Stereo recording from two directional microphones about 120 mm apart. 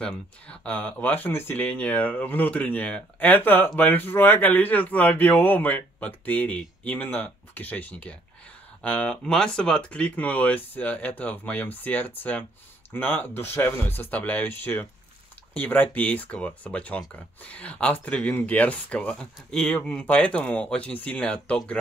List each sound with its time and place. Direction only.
0.0 s speech: 10° left (ahead or behind)